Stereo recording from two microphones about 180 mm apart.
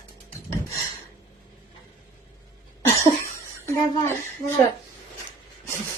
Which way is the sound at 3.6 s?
15° left (ahead or behind).